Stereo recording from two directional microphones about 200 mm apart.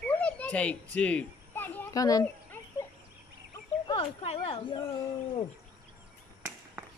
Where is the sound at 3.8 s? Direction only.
25° left (ahead or behind).